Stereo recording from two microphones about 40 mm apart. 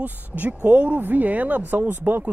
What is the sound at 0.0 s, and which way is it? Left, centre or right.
Speech, right.